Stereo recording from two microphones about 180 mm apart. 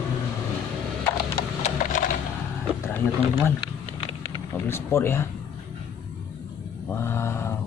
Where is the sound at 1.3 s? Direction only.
45° left (ahead or behind).